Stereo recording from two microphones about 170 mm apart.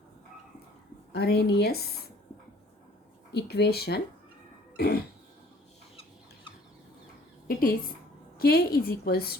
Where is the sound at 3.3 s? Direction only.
70° left (ahead or behind).